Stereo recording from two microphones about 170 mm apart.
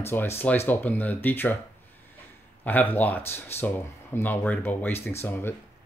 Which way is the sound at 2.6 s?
10° left (ahead or behind).